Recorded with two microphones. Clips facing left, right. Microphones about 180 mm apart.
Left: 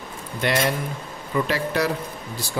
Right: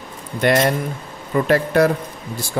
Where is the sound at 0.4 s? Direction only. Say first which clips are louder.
Right 6 dB; 50° right (ahead or behind).